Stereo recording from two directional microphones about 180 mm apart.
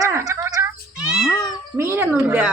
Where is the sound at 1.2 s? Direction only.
20° left (ahead or behind).